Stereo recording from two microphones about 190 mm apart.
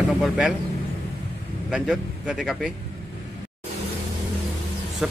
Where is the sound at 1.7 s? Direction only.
5° right (ahead or behind).